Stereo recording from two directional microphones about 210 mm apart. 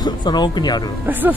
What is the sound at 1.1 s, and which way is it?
Speech, 10° right (ahead or behind).